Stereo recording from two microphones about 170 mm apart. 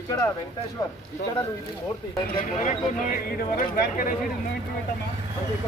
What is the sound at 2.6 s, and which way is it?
Speech, 50° left (ahead or behind).